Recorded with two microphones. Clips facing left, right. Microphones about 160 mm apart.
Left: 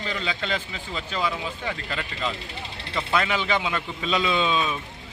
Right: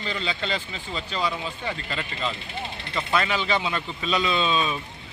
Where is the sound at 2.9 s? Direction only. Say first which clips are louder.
Even; 10° left (ahead or behind).